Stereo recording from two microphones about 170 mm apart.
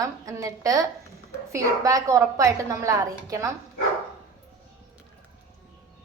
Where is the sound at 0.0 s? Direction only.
20° right (ahead or behind).